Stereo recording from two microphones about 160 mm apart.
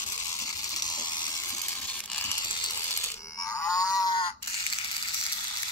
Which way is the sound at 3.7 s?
25° left (ahead or behind).